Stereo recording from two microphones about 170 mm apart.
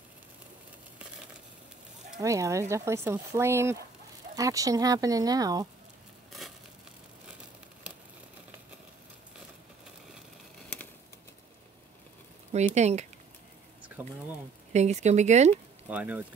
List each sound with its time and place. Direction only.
2.1 s speech: 20° right (ahead or behind)
12.5 s speech: 40° right (ahead or behind)
14.0 s speech: 10° right (ahead or behind)
14.7 s speech: 40° right (ahead or behind)
15.9 s speech: 10° right (ahead or behind)